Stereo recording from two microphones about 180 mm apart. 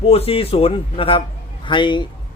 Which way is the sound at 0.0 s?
35° left (ahead or behind).